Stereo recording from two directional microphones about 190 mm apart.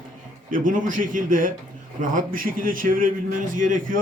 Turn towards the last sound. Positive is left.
turn(degrees=-45)  # may be behind; listen again after turning